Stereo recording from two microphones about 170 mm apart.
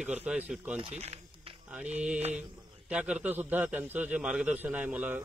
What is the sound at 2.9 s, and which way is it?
Speech, 5° right (ahead or behind).